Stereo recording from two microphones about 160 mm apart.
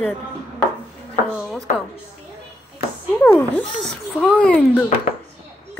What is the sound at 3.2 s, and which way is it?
A child's voice, 10° left (ahead or behind).